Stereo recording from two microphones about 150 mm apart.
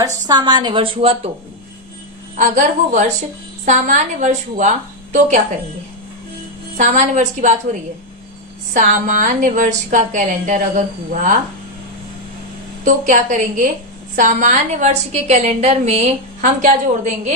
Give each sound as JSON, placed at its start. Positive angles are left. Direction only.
{"t": 0.0, "sound": "a woman's voice", "side_deg": -25}
{"t": 2.3, "sound": "a woman's voice", "side_deg": -55}
{"t": 6.7, "sound": "a woman's voice", "side_deg": -55}
{"t": 8.7, "sound": "a woman's voice", "side_deg": -60}
{"t": 12.8, "sound": "a woman's voice", "side_deg": -60}